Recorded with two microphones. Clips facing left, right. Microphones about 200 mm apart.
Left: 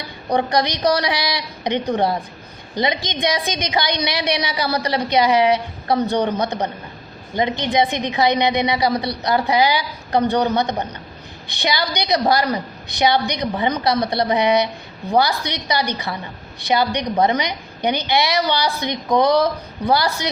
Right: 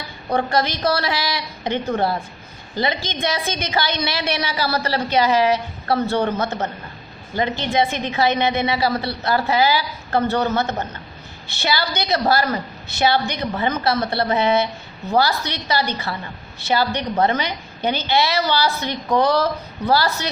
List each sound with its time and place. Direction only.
0.3 s a woman's voice: 15° left (ahead or behind)